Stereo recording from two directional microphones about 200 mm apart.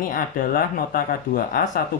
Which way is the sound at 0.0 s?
45° left (ahead or behind).